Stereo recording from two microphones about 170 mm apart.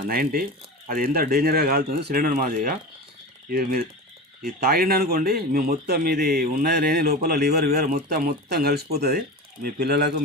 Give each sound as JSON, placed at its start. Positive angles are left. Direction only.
{"t": 0.1, "sound": "speech", "side_deg": -60}